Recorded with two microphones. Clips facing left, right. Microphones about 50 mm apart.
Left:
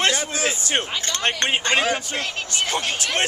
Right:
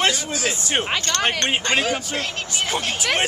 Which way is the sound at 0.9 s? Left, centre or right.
Right.